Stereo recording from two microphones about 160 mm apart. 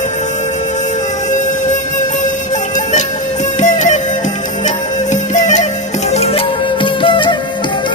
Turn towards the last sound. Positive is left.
turn(degrees=30)  # may be behind; listen again after turning